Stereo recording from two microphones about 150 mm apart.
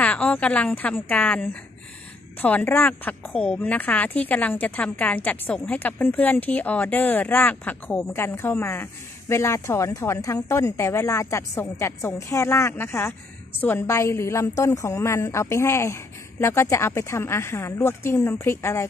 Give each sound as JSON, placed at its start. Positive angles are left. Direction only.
{"t": 0.0, "sound": "a woman's voice", "side_deg": 10}